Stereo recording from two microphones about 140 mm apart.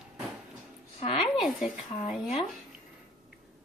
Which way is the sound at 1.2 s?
5° right (ahead or behind).